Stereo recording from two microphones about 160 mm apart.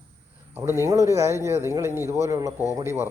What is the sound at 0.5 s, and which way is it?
Speech, 15° right (ahead or behind).